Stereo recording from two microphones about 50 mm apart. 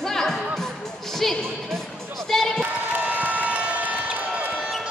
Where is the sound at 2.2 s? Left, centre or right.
Centre.